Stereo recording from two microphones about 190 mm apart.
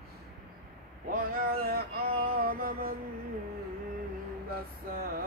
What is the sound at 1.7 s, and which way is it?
Music, 55° right (ahead or behind).